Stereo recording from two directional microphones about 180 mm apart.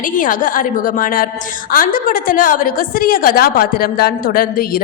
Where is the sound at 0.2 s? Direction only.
50° left (ahead or behind).